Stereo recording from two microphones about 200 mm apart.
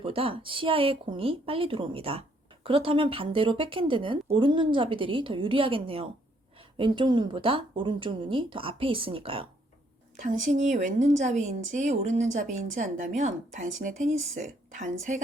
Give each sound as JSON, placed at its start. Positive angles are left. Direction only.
{"t": 0.0, "sound": "speech", "side_deg": -25}
{"t": 10.2, "sound": "speech", "side_deg": -40}